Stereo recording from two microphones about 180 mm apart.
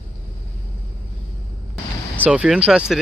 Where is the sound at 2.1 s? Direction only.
5° right (ahead or behind).